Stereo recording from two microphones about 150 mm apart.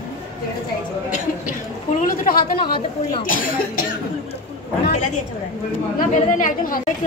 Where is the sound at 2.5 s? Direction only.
35° left (ahead or behind).